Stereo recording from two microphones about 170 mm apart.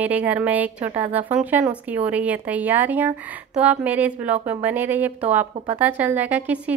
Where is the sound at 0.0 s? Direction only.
10° right (ahead or behind).